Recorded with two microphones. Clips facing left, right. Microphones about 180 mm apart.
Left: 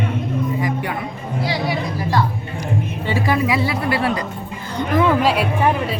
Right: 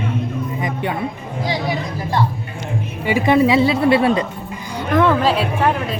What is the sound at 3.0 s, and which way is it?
A woman's voice, 20° right (ahead or behind).